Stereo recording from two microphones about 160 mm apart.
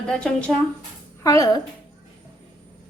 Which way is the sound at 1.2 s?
20° left (ahead or behind).